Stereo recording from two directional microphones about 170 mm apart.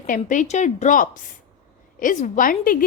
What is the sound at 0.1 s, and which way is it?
A woman's voice, 50° left (ahead or behind).